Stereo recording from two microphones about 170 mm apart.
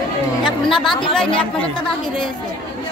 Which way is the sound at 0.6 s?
Centre (ahead or behind).